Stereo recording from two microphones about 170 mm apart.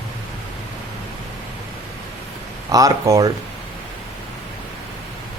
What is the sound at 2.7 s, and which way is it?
Speech, 20° right (ahead or behind).